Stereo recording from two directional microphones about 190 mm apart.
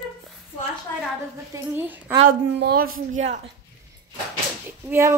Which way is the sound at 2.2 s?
55° right (ahead or behind).